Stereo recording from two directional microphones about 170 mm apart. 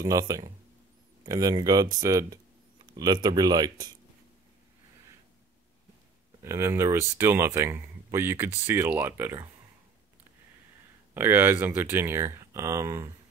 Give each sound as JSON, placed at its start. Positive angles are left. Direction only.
{"t": 0.0, "sound": "speech", "side_deg": -20}
{"t": 6.4, "sound": "speech", "side_deg": -15}
{"t": 11.1, "sound": "speech", "side_deg": -15}